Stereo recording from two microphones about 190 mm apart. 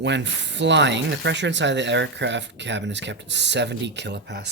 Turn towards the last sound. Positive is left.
turn(degrees=-65)  # may be behind; listen again after turning